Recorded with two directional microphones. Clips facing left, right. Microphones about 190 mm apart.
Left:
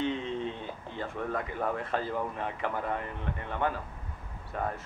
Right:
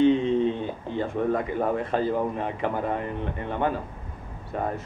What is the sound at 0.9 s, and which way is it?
Speech, 25° right (ahead or behind).